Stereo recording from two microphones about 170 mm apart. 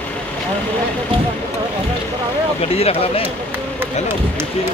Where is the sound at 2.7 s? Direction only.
35° left (ahead or behind).